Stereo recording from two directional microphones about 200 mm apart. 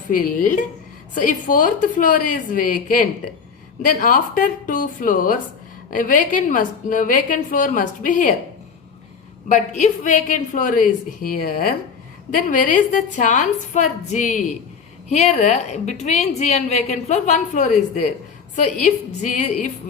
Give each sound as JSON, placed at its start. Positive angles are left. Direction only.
{"t": 0.1, "sound": "a woman's voice", "side_deg": 45}
{"t": 9.5, "sound": "a woman's voice", "side_deg": 35}